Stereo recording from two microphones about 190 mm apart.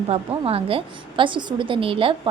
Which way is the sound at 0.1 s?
30° right (ahead or behind).